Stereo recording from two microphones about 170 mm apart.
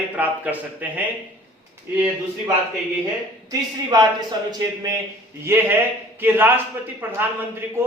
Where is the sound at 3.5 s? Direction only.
20° right (ahead or behind).